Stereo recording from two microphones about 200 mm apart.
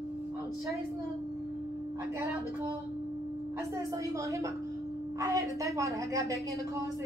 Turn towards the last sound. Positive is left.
turn(degrees=-15)  # may be behind; listen again after turning